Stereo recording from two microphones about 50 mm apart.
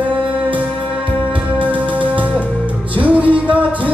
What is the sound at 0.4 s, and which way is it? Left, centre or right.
Music, right.